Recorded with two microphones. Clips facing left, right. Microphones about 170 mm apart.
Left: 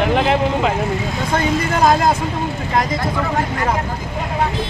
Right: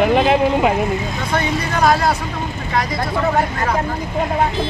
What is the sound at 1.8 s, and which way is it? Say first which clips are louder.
Speech: even; 20° left (ahead or behind).